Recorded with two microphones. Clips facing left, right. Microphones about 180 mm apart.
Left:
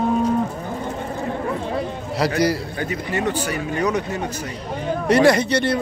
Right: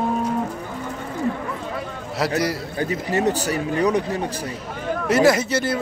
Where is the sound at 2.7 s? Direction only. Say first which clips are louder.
Right 2 dB; 35° right (ahead or behind).